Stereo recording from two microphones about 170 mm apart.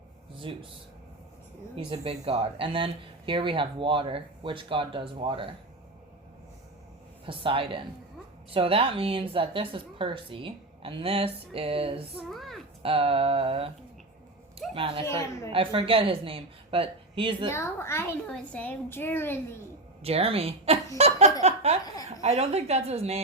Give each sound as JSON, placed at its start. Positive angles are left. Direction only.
{"t": 0.3, "sound": "speech", "side_deg": -30}
{"t": 1.7, "sound": "speech", "side_deg": -30}
{"t": 7.3, "sound": "speech", "side_deg": -30}
{"t": 12.1, "sound": "a child's voice", "side_deg": 0}
{"t": 12.8, "sound": "speech", "side_deg": -35}
{"t": 17.5, "sound": "a woman's voice", "side_deg": 15}
{"t": 20.0, "sound": "speech", "side_deg": -35}